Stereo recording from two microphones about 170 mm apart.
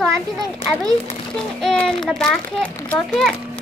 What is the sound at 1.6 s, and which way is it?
A child's voice, 5° left (ahead or behind).